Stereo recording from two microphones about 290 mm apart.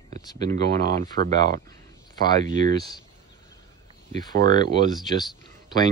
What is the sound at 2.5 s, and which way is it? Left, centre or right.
Speech, centre.